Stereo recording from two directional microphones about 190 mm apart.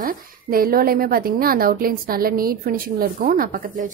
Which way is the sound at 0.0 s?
50° right (ahead or behind).